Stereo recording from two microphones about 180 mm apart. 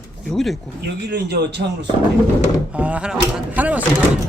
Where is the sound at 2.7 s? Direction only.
10° right (ahead or behind).